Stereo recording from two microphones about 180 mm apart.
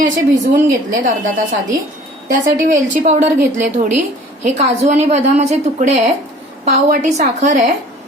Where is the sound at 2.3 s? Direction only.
45° right (ahead or behind).